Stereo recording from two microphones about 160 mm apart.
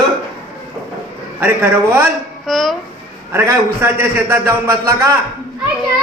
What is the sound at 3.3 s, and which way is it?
A man's voice, 15° right (ahead or behind).